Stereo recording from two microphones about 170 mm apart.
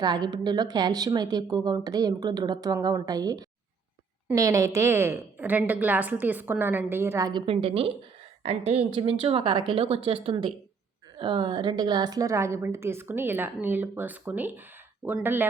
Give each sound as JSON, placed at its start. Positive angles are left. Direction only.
{"t": 0.0, "sound": "a woman's voice", "side_deg": -25}
{"t": 7.4, "sound": "a woman's voice", "side_deg": -35}